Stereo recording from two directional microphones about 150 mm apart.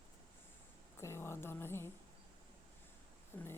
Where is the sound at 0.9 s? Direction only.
15° left (ahead or behind).